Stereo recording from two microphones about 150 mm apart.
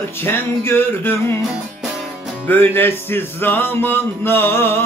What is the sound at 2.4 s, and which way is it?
Music, 15° left (ahead or behind).